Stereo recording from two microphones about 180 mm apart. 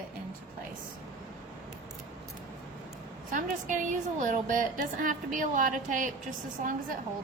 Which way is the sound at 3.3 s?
45° right (ahead or behind).